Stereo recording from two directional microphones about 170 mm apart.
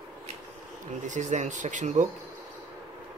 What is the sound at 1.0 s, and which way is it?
Speech, 45° right (ahead or behind).